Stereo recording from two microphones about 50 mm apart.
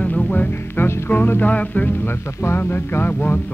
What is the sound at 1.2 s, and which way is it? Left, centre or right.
Music, left.